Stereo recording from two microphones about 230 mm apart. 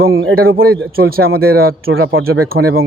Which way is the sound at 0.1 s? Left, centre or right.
Right.